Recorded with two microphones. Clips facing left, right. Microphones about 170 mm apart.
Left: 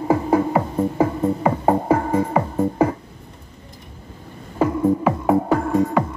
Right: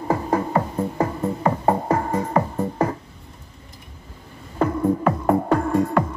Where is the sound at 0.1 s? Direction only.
10° left (ahead or behind).